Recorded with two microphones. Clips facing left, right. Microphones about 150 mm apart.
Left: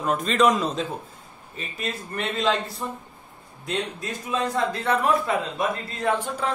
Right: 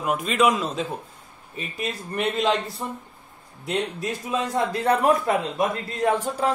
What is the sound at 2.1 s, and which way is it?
Speech, 20° right (ahead or behind).